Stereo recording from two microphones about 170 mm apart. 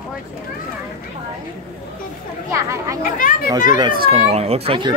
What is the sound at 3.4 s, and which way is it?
Speech, 20° right (ahead or behind).